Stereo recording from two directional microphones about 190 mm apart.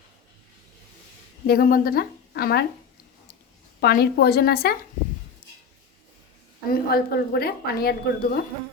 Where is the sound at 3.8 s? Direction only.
55° left (ahead or behind).